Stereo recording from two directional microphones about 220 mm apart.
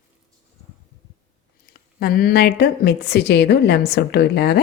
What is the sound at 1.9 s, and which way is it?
Speech, 45° left (ahead or behind).